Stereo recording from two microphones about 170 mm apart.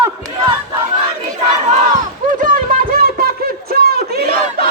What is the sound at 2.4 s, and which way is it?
Music, 55° right (ahead or behind).